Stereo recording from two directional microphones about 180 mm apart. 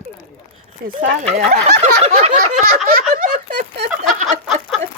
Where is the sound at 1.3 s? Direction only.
40° right (ahead or behind).